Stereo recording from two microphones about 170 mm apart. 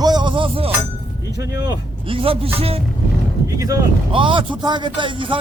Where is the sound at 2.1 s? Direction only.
35° right (ahead or behind).